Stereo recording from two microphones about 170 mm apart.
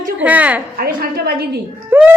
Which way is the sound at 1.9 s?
15° right (ahead or behind).